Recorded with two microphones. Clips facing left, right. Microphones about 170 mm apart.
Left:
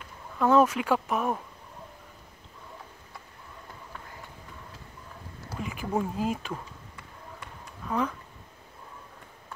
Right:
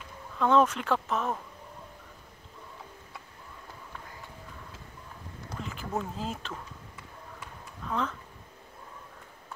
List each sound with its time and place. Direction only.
0.4 s speech: 5° left (ahead or behind)
5.5 s speech: 10° left (ahead or behind)
7.9 s speech: 10° left (ahead or behind)